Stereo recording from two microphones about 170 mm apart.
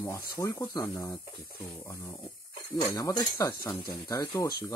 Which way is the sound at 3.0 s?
20° left (ahead or behind).